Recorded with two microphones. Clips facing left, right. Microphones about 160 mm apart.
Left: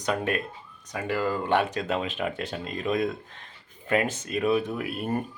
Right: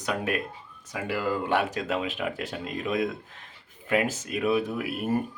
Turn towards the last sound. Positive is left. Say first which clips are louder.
# right 1 dB
turn(degrees=-5)  # may be behind; listen again after turning